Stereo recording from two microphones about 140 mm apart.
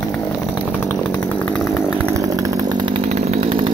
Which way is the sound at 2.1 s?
25° right (ahead or behind).